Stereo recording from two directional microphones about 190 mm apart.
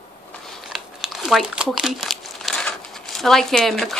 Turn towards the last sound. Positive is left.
turn(degrees=0)  # may be behind; listen again after turning